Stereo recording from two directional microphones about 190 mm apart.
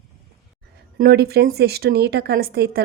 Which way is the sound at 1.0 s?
55° right (ahead or behind).